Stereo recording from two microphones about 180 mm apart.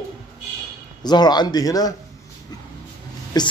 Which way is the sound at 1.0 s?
25° left (ahead or behind).